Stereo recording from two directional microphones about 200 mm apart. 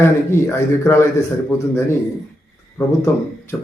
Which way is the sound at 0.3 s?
15° left (ahead or behind).